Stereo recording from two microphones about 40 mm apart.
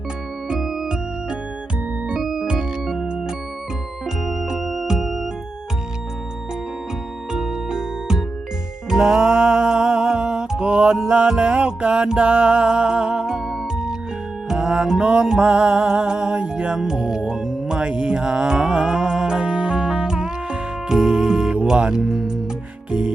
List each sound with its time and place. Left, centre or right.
0.6 s music: centre
2.2 s music: centre
7.3 s music: centre
16.7 s music: centre
17.3 s music: centre
17.7 s music: right
22.9 s music: right